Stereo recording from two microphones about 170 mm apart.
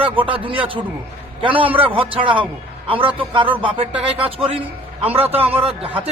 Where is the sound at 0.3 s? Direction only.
30° right (ahead or behind).